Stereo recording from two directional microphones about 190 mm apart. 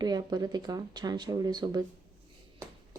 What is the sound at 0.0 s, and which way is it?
Speech, 20° right (ahead or behind).